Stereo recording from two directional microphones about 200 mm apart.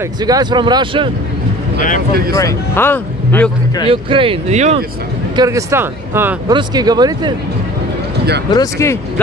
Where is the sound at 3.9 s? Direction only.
25° right (ahead or behind).